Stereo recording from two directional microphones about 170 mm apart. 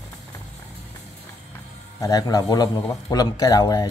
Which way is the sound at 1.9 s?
20° left (ahead or behind).